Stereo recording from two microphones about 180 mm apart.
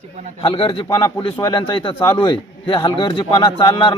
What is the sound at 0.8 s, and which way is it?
Speech, 20° left (ahead or behind).